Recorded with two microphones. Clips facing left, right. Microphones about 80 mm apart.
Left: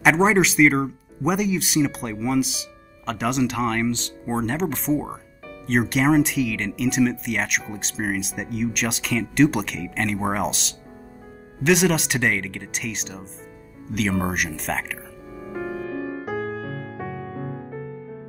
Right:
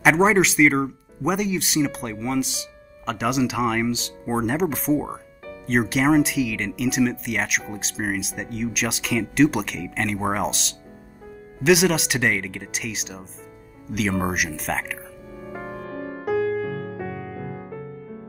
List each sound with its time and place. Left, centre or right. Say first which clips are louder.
0.0 s speech: even; centre
16.9 s music: even; left